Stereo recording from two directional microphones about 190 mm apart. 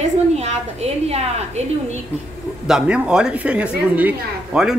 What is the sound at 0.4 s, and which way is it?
A woman's voice, 35° right (ahead or behind).